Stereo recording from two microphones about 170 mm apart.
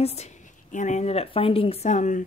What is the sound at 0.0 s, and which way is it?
Speech, 40° left (ahead or behind).